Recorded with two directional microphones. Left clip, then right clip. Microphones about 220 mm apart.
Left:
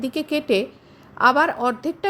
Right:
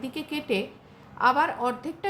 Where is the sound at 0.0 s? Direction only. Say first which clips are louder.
Left 9 dB; 30° left (ahead or behind).